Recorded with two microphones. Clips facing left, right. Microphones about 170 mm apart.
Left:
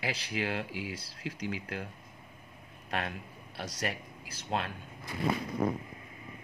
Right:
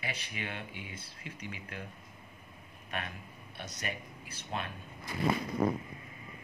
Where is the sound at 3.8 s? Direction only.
90° left.